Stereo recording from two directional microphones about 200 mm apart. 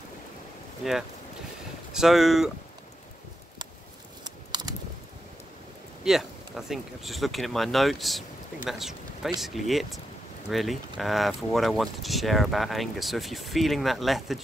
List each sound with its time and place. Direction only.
1.9 s speech: centre (ahead or behind)
4.2 s typing: 20° right (ahead or behind)
6.0 s speech: centre (ahead or behind)